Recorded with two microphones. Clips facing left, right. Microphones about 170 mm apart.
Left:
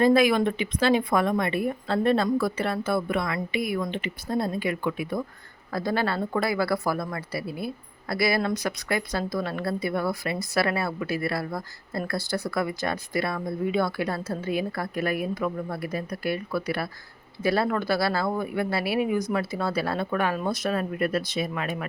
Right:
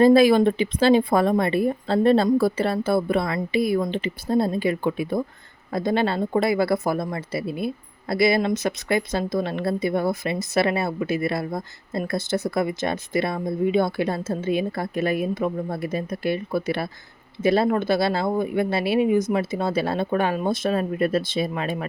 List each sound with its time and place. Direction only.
0.0 s speech: 30° right (ahead or behind)